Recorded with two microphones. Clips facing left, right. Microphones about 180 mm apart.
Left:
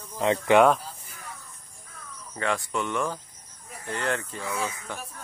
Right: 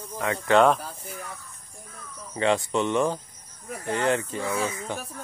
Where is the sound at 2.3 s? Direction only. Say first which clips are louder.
Right 5 dB; 20° right (ahead or behind).